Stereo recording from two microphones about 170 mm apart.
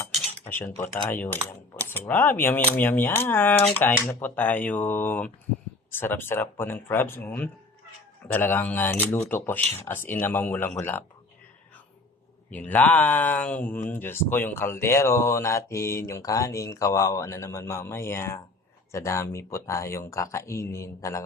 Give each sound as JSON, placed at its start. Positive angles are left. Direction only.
{"t": 0.4, "sound": "cutlery", "side_deg": 10}
{"t": 0.8, "sound": "speech", "side_deg": 10}
{"t": 12.5, "sound": "speech", "side_deg": 10}